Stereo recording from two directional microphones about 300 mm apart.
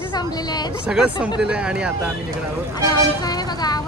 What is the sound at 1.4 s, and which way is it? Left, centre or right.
Speech, centre.